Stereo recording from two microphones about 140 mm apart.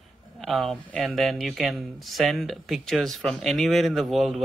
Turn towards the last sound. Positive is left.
turn(degrees=0)  # may be behind; listen again after turning